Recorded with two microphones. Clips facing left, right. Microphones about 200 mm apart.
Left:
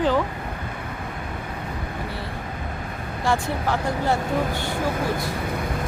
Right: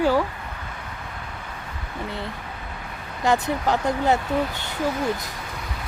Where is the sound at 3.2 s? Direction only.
20° right (ahead or behind).